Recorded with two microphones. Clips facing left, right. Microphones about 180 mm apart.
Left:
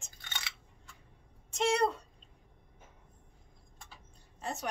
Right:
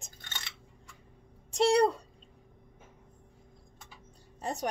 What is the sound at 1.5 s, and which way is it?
Speech, 35° right (ahead or behind).